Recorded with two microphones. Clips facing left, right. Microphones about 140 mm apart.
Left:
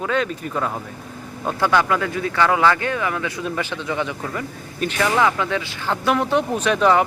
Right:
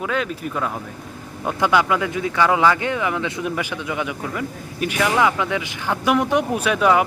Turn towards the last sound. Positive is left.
turn(degrees=-5)  # may be behind; listen again after turning